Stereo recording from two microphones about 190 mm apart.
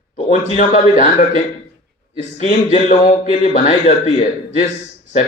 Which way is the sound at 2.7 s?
40° left (ahead or behind).